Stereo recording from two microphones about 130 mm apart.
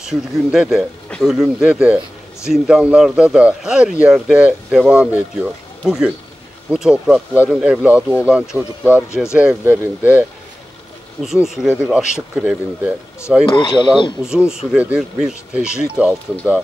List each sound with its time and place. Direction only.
0.0 s speech: 5° right (ahead or behind)
11.2 s speech: 5° right (ahead or behind)
13.5 s speech: 40° left (ahead or behind)
14.2 s speech: 5° right (ahead or behind)